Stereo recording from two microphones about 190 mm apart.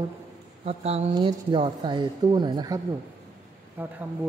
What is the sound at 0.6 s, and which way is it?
Speech, 35° right (ahead or behind).